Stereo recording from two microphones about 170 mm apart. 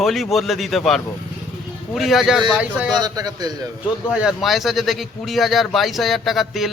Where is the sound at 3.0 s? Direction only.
25° right (ahead or behind).